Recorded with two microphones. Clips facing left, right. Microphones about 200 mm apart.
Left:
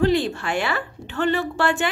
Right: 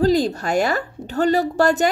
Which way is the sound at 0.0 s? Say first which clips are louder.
Right 3 dB; 40° right (ahead or behind).